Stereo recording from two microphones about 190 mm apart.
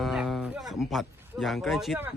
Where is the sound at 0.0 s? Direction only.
Centre (ahead or behind).